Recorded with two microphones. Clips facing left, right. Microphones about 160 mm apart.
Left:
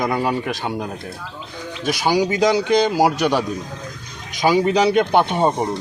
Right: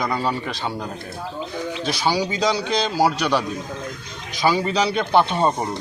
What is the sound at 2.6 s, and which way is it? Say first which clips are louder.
Speech: left 6 dB; 15° left (ahead or behind).